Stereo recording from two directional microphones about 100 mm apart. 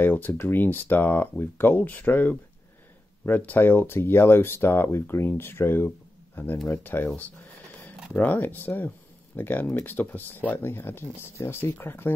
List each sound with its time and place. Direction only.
0.0 s speech: 20° left (ahead or behind)